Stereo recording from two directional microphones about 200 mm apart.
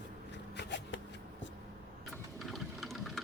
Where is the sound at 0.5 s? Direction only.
65° left (ahead or behind).